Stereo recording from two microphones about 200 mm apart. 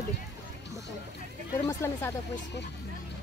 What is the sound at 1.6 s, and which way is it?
Speech, 15° left (ahead or behind).